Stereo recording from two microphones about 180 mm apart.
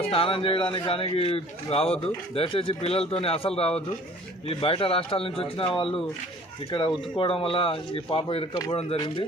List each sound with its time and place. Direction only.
0.1 s a man's voice: 30° left (ahead or behind)